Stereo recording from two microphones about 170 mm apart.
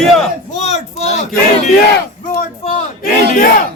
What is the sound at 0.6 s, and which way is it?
Speech, 40° left (ahead or behind).